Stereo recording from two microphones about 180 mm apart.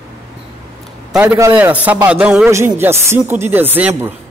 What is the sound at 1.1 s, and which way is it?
Speech, 10° right (ahead or behind).